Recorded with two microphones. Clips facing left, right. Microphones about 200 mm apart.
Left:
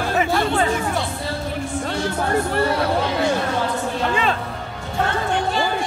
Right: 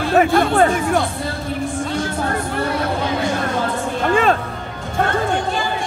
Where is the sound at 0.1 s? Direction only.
55° right (ahead or behind).